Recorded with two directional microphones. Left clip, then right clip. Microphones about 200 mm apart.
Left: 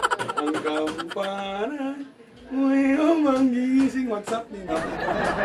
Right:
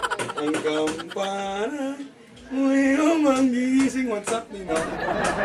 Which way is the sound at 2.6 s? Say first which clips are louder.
Right 1 dB; 20° left (ahead or behind).